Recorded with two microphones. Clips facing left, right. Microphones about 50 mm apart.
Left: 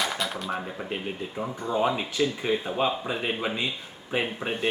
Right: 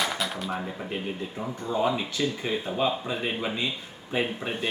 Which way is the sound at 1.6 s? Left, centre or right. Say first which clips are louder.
Even; left.